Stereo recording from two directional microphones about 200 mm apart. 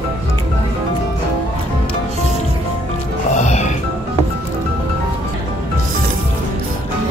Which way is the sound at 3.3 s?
35° left (ahead or behind).